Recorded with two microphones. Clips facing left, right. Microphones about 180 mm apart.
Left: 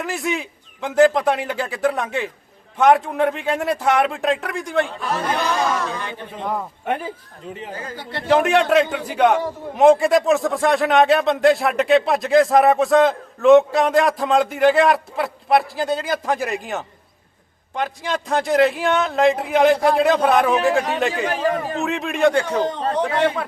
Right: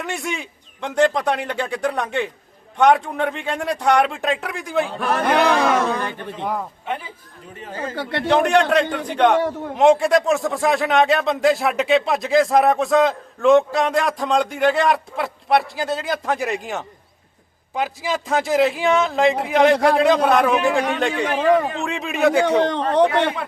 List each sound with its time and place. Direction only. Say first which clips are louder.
0.0 s a man's voice: left 3 dB; centre (ahead or behind)
4.9 s speech: right 5 dB; 60° right (ahead or behind)
6.8 s speech: left 4 dB; 50° left (ahead or behind)
8.3 s a man's voice: left 1 dB; centre (ahead or behind)
21.8 s a man's voice: left 1 dB; centre (ahead or behind)
22.4 s a man's voice: right 3 dB; 70° right (ahead or behind)